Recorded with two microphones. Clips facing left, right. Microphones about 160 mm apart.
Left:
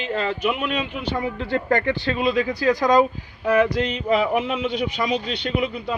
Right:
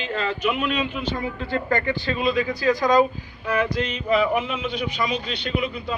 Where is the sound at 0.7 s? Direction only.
65° left (ahead or behind).